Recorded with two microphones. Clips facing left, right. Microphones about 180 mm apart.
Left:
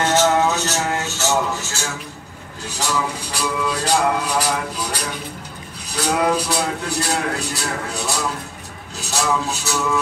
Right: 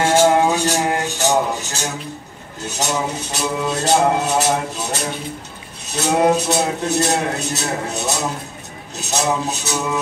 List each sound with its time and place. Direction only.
0.0 s music: 10° right (ahead or behind)